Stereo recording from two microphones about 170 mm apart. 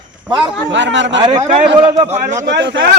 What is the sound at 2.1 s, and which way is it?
Speech, 40° right (ahead or behind).